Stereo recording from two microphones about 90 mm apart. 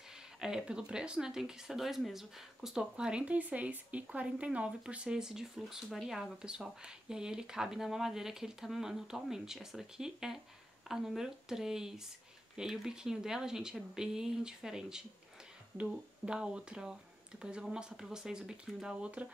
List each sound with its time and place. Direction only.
0.4 s speech: 10° right (ahead or behind)